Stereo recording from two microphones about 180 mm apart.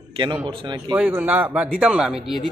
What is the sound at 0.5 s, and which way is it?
Speech, 25° right (ahead or behind).